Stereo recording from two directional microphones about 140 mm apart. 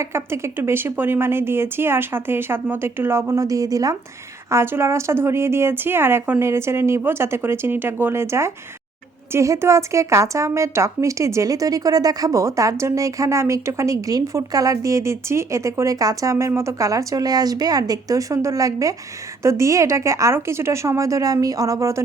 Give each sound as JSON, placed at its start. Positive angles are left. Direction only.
{"t": 0.0, "sound": "a woman's voice", "side_deg": -20}